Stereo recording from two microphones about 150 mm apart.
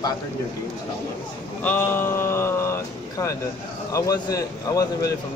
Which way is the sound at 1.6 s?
15° left (ahead or behind).